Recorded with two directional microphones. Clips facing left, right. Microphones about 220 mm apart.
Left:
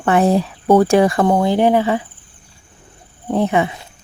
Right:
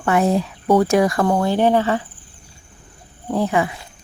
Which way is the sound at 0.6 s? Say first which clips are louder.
Left 3 dB; 50° left (ahead or behind).